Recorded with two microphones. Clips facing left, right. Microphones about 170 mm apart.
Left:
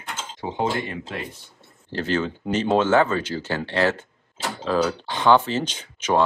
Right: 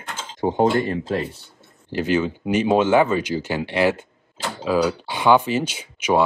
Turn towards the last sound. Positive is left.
turn(degrees=-10)  # may be behind; listen again after turning